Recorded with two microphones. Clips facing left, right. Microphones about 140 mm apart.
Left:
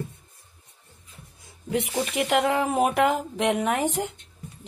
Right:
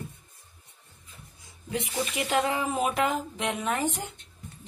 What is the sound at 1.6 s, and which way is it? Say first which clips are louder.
A woman's voice: left 5 dB; 65° left (ahead or behind).